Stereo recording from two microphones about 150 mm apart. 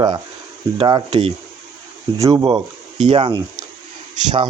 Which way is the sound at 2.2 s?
20° right (ahead or behind).